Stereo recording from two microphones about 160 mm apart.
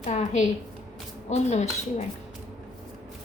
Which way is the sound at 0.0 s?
45° left (ahead or behind).